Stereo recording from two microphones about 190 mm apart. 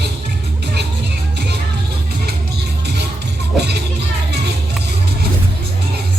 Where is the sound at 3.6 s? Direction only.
60° right (ahead or behind).